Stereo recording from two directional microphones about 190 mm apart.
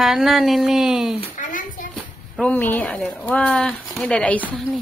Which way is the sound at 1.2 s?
45° left (ahead or behind).